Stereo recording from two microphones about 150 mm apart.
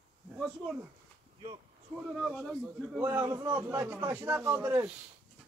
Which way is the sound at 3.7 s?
15° right (ahead or behind).